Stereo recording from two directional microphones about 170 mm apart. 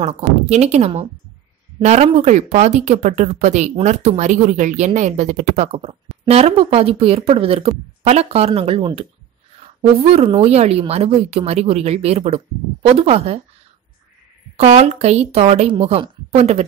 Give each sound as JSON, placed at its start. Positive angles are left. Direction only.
{"t": 0.0, "sound": "speech", "side_deg": -40}
{"t": 14.6, "sound": "speech", "side_deg": -40}